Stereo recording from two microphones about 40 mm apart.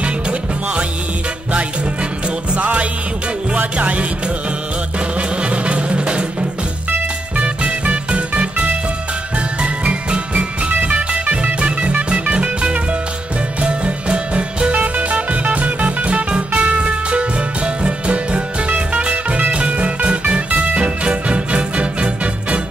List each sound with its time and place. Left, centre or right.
0.0 s music: right
2.2 s music: right
5.1 s music: right
7.3 s music: right
14.8 s music: right